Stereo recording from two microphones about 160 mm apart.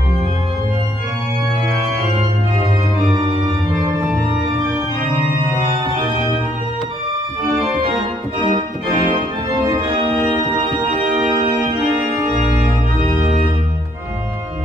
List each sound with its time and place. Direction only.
8.4 s organ: 35° right (ahead or behind)
10.9 s organ: 45° right (ahead or behind)
13.2 s organ: 40° right (ahead or behind)